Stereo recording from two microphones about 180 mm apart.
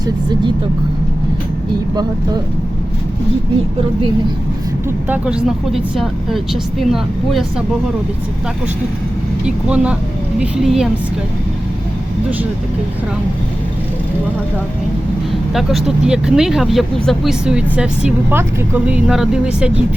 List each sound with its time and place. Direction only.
0.0 s speech: 25° right (ahead or behind)
5.0 s speech: 5° right (ahead or behind)
9.6 s speech: 5° right (ahead or behind)
15.5 s speech: 5° right (ahead or behind)